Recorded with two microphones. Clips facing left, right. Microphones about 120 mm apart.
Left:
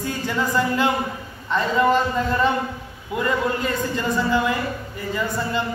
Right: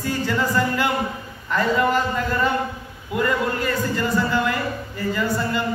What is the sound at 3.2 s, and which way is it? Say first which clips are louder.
Speech: even; 20° left (ahead or behind).